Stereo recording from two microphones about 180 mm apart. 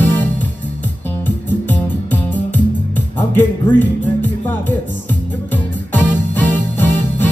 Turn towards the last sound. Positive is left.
turn(degrees=10)  # may be behind; listen again after turning